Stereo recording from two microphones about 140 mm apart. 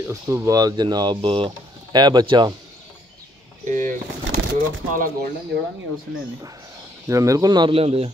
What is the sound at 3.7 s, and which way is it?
Speech, 65° right (ahead or behind).